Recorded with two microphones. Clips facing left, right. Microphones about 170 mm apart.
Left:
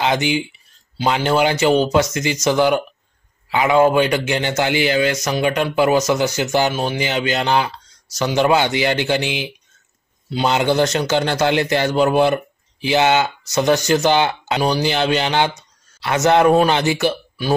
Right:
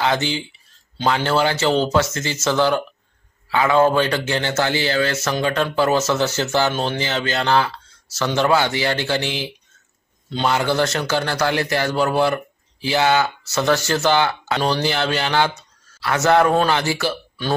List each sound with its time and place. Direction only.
0.0 s speech: 15° left (ahead or behind)